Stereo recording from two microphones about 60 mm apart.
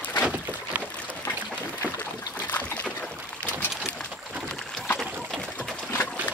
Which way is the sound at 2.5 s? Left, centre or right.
Left.